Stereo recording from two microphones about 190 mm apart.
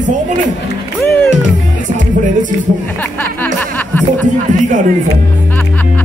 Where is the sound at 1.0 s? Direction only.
10° left (ahead or behind).